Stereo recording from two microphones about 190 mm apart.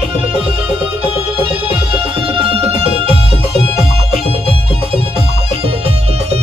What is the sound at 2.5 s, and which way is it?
Music, 30° right (ahead or behind).